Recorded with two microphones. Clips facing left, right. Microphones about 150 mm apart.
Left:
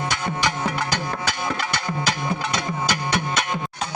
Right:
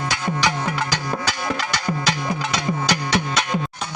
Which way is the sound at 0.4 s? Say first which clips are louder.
Even; 55° left (ahead or behind).